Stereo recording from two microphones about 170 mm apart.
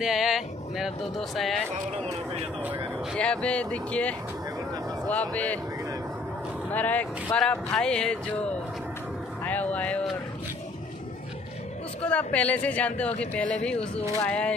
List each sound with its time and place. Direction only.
0.0 s speech: centre (ahead or behind)
3.2 s speech: 5° left (ahead or behind)
6.7 s speech: 10° left (ahead or behind)
9.4 s music: 10° left (ahead or behind)
12.0 s speech: 5° left (ahead or behind)